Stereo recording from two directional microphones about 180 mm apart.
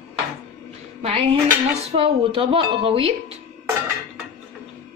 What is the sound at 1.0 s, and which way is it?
Speech, 35° right (ahead or behind).